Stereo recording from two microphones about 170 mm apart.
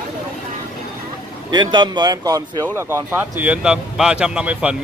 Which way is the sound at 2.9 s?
10° right (ahead or behind).